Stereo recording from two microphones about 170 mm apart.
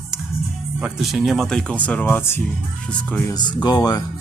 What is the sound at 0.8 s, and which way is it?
Speech, centre (ahead or behind).